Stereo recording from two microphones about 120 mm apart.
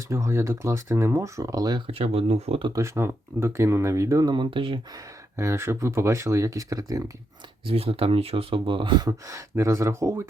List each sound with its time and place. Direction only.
0.1 s speech: 25° right (ahead or behind)
1.9 s speech: 55° right (ahead or behind)
2.7 s speech: 25° right (ahead or behind); by 4.8 s 45° right (ahead or behind)
5.4 s speech: 20° right (ahead or behind)
7.7 s speech: 55° right (ahead or behind); by 10.2 s 25° right (ahead or behind)